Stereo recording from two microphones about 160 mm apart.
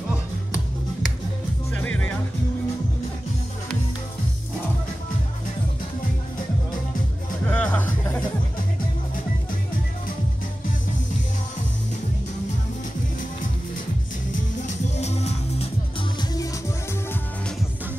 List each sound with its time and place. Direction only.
1.7 s music: 10° left (ahead or behind)
7.4 s music: 10° left (ahead or behind)
14.3 s music: 50° left (ahead or behind)